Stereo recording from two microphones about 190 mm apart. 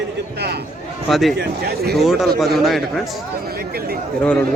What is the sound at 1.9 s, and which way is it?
Speech, centre (ahead or behind).